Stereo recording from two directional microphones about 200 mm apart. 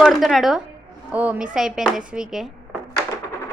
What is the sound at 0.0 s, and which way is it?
A woman's voice, centre (ahead or behind).